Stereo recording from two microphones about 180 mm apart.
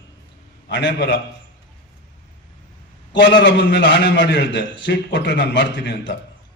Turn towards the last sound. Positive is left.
turn(degrees=80)